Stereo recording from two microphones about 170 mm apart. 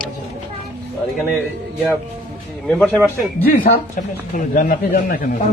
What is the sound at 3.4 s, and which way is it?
Speech, 65° left (ahead or behind).